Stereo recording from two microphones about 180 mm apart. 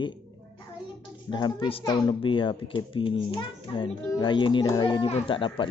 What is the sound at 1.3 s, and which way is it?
A child's voice, 25° left (ahead or behind).